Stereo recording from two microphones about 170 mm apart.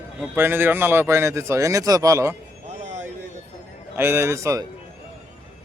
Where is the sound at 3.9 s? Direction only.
15° right (ahead or behind).